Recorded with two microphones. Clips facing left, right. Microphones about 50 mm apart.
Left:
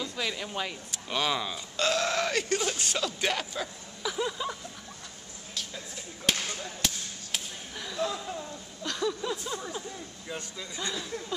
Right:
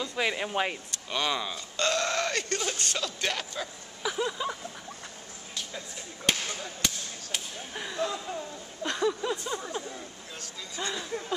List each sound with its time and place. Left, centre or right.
0.1 s speech: right
0.9 s speech: centre
4.0 s vehicle: centre
6.2 s whip: centre
7.7 s a sound: right
8.0 s speech: centre
8.8 s a sound: right
9.3 s music: centre